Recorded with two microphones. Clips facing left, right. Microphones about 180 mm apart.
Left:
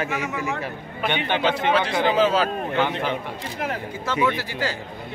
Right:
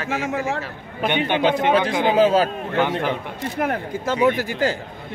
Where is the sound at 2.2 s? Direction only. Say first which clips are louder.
Right 5 dB; 50° right (ahead or behind).